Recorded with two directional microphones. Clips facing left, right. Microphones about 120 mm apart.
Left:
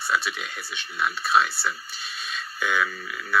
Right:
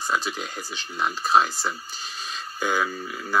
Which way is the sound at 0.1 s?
35° right (ahead or behind).